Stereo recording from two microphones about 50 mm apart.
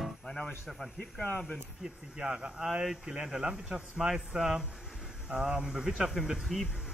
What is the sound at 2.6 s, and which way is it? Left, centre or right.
A man's voice, centre.